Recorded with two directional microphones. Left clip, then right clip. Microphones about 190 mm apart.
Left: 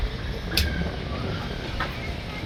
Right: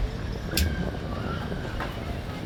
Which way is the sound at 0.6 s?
65° right (ahead or behind).